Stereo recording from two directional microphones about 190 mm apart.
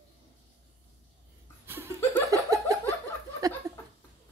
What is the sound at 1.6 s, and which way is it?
Chuckle, 10° right (ahead or behind).